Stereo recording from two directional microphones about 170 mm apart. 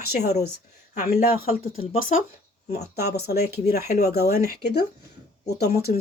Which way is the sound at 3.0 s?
70° left (ahead or behind).